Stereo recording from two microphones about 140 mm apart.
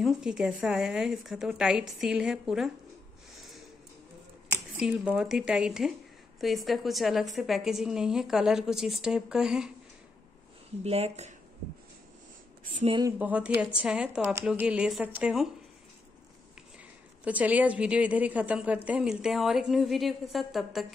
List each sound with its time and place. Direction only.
0.0 s a woman's voice: 5° right (ahead or behind)
4.7 s a woman's voice: 10° right (ahead or behind)
10.8 s speech: 50° right (ahead or behind)
13.2 s a woman's voice: 10° right (ahead or behind)
17.2 s a woman's voice: 10° right (ahead or behind)